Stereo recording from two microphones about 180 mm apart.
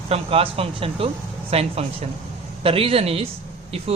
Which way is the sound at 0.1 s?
30° right (ahead or behind).